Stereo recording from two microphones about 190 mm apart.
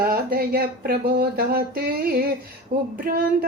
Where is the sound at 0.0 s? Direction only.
50° right (ahead or behind).